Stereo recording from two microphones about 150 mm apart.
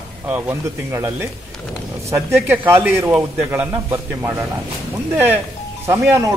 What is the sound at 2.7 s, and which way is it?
A man's voice, 15° right (ahead or behind).